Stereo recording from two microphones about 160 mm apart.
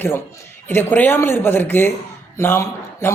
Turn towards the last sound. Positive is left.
turn(degrees=15)  # may be behind; listen again after turning